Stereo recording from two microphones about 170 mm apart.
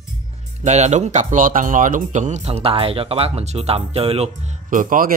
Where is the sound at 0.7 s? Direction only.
40° right (ahead or behind).